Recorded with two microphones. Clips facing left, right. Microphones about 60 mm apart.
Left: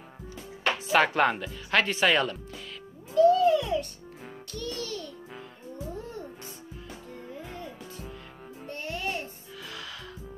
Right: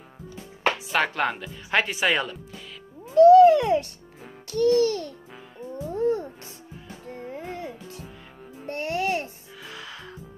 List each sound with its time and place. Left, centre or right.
0.9 s speech: centre
1.5 s speech: centre
3.2 s cat: right
4.5 s babbling: right
5.9 s music: right
7.1 s music: right
9.7 s music: right